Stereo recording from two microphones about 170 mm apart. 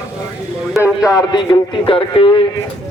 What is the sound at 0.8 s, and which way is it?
A man's voice, 20° left (ahead or behind).